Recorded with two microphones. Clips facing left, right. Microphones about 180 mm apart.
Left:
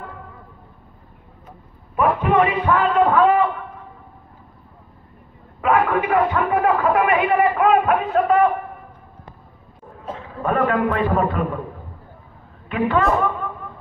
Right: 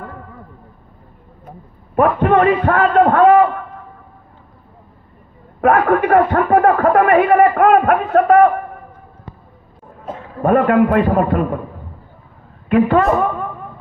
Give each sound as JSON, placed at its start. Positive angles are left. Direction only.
{"t": 2.0, "sound": "a man's voice", "side_deg": -55}
{"t": 5.6, "sound": "a man's voice", "side_deg": -55}
{"t": 10.4, "sound": "a man's voice", "side_deg": -50}
{"t": 12.6, "sound": "a man's voice", "side_deg": -45}